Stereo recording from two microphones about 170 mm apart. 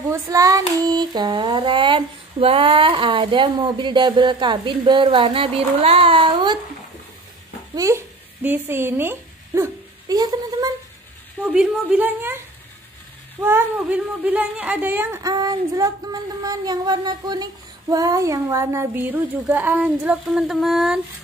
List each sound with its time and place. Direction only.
0.1 s speech: 20° right (ahead or behind)
7.7 s speech: 15° right (ahead or behind)
11.4 s a woman's voice: 5° right (ahead or behind)
13.4 s a woman's voice: 10° right (ahead or behind)